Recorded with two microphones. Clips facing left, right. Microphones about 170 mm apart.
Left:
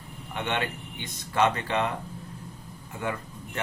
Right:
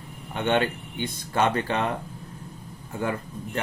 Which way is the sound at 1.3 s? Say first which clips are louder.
Right 1 dB; 30° right (ahead or behind).